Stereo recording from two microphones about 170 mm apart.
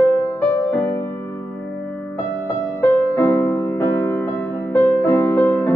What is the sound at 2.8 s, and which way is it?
Music, 15° left (ahead or behind).